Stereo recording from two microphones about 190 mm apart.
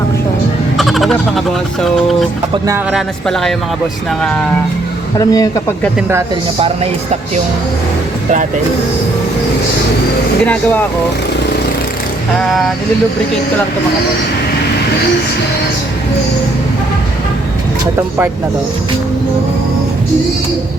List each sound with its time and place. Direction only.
0.8 s a sound: centre (ahead or behind)
2.9 s speech: centre (ahead or behind)
5.1 s a man's voice: 20° left (ahead or behind)
10.4 s speech: 10° left (ahead or behind)
12.4 s speech: centre (ahead or behind)